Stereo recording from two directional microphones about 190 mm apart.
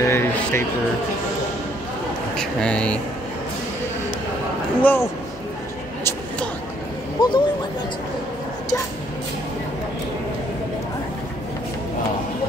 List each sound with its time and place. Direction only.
0.0 s a sound: 15° left (ahead or behind)
2.3 s speech: 5° left (ahead or behind)
4.8 s a man's voice: 10° left (ahead or behind)
7.2 s speech: 25° left (ahead or behind)